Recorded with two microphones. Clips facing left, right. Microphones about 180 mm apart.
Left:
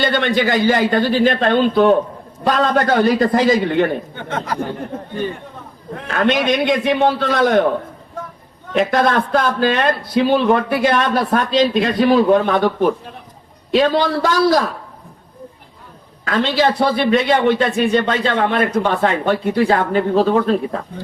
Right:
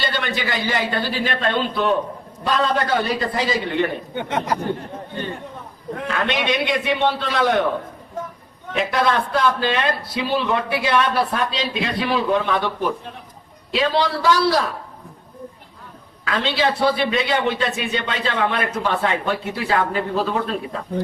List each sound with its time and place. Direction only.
0.0 s a man's voice: 50° left (ahead or behind)
4.1 s a man's voice: 20° right (ahead or behind)
6.2 s a man's voice: centre (ahead or behind)
6.5 s a man's voice: 45° left (ahead or behind)
8.7 s a man's voice: 45° left (ahead or behind)
16.2 s a man's voice: 45° left (ahead or behind)